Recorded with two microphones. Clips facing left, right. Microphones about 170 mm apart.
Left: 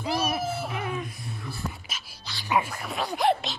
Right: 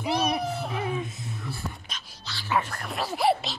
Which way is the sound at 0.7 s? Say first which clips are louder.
Right 2 dB; 25° right (ahead or behind).